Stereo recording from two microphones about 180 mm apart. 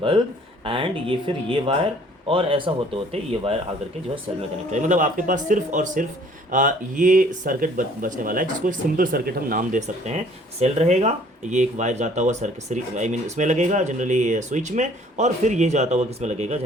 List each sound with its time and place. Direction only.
0.6 s speech: 30° right (ahead or behind)